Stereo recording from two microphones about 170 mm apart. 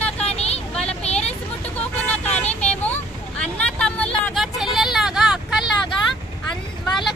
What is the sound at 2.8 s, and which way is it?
Vehicle, 10° left (ahead or behind).